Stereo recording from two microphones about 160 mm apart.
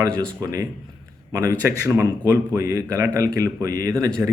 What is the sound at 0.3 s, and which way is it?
A man's voice, 20° right (ahead or behind).